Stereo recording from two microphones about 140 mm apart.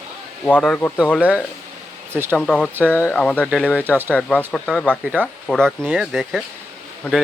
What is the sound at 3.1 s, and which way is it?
Speech, 5° left (ahead or behind).